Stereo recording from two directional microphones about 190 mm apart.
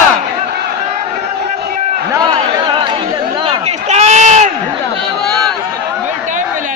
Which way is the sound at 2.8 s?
25° right (ahead or behind).